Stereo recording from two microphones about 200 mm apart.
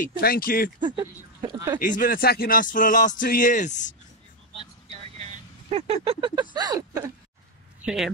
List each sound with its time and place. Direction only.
0.0 s speech: 45° left (ahead or behind)
0.7 s speech: 20° right (ahead or behind)
1.8 s speech: 45° left (ahead or behind)
5.7 s speech: 30° right (ahead or behind)
7.8 s speech: centre (ahead or behind)